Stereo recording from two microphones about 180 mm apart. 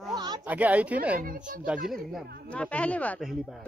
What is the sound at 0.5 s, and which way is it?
Speech, 10° right (ahead or behind).